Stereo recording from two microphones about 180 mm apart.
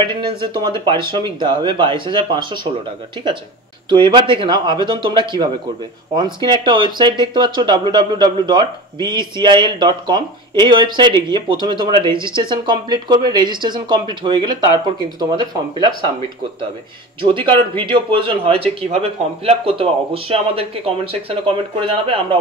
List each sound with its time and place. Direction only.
0.0 s speech: 30° right (ahead or behind)
3.9 s speech: 25° right (ahead or behind)
17.2 s speech: 30° right (ahead or behind)